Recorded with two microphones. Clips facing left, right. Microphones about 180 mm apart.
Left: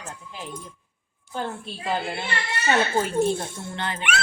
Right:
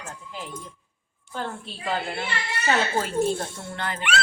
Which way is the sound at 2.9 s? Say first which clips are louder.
Left 2 dB; 20° left (ahead or behind).